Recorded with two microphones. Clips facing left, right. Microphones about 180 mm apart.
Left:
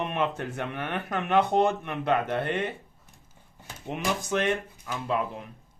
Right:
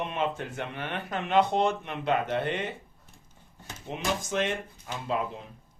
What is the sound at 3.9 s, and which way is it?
A man's voice, 60° left (ahead or behind).